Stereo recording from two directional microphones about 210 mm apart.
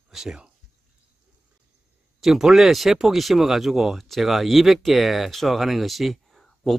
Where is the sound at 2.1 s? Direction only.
Centre (ahead or behind).